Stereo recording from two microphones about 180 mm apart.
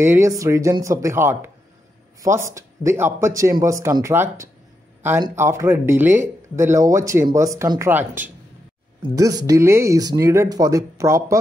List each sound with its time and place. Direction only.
0.0 s speech: 15° right (ahead or behind)